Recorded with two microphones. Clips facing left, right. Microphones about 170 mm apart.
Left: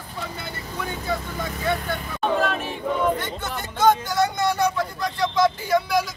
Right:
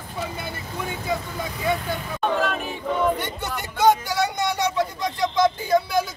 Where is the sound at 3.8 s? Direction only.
15° right (ahead or behind).